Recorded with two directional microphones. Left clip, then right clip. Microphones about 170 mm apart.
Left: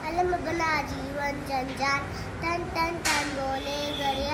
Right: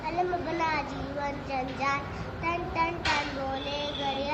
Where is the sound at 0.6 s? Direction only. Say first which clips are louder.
Left 2 dB; 15° left (ahead or behind).